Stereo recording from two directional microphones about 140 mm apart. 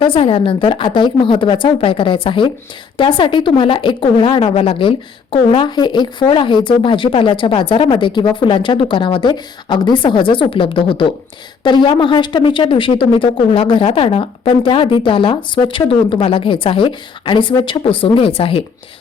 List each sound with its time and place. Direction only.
0.0 s speech: 40° left (ahead or behind)